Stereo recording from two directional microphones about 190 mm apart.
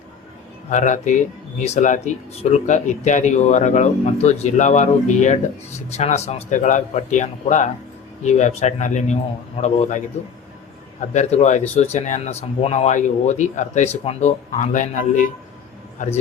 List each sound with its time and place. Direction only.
0.7 s speech: 40° left (ahead or behind)
11.1 s speech: 35° left (ahead or behind)